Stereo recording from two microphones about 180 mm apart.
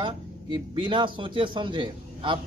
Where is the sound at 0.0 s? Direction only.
25° right (ahead or behind).